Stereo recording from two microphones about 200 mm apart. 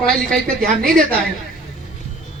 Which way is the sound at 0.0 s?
5° left (ahead or behind).